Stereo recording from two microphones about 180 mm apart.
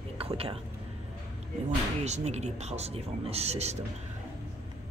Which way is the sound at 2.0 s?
40° right (ahead or behind).